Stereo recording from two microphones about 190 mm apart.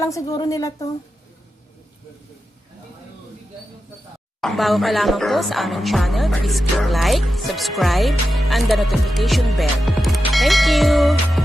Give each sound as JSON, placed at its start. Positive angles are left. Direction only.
{"t": 0.0, "sound": "speech", "side_deg": 15}
{"t": 4.4, "sound": "speech", "side_deg": 0}